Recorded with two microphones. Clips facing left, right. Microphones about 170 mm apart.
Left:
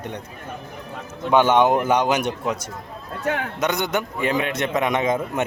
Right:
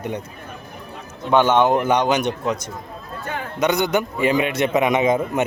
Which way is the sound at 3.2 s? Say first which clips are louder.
Left 5 dB; 80° left.